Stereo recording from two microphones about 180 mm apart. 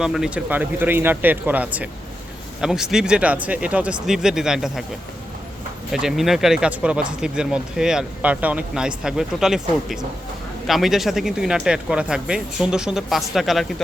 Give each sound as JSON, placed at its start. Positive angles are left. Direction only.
{"t": 0.0, "sound": "speech", "side_deg": -5}
{"t": 5.9, "sound": "speech", "side_deg": 0}